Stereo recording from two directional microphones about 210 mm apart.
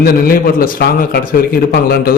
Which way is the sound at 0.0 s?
45° left (ahead or behind).